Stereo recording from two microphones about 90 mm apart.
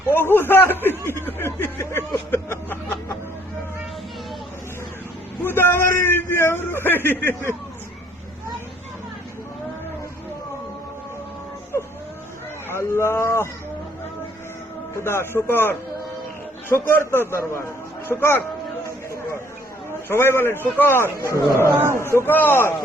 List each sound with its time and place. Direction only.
0.1 s chuckle: 25° left (ahead or behind)
5.4 s a sound: 25° left (ahead or behind)
12.6 s a sound: 30° left (ahead or behind)
15.0 s a man's voice: 25° left (ahead or behind)
18.9 s chatter: 30° left (ahead or behind)
20.1 s a man's voice: 25° left (ahead or behind)
21.8 s a man's voice: 30° right (ahead or behind)
22.3 s a man's voice: 20° left (ahead or behind)